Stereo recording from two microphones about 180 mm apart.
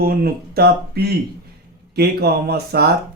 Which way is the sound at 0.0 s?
55° right (ahead or behind).